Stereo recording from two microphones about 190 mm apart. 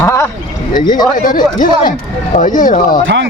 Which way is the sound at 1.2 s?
45° left (ahead or behind).